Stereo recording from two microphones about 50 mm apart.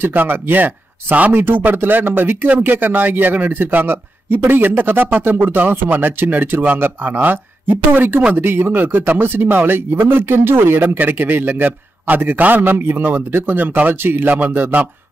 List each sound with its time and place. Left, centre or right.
0.0 s speech: right